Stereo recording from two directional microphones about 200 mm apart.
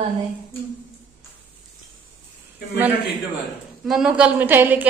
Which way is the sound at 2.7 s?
10° right (ahead or behind).